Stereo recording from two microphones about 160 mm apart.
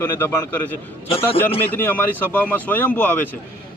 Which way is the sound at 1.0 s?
35° left (ahead or behind).